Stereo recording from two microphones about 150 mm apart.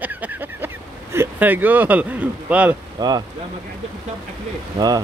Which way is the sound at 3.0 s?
25° right (ahead or behind).